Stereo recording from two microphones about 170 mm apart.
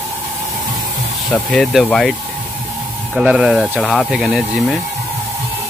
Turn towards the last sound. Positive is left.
turn(degrees=0)  # may be behind; listen again after turning